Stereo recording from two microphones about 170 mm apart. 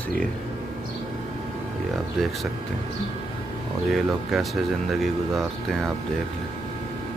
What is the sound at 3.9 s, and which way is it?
Speech, centre (ahead or behind).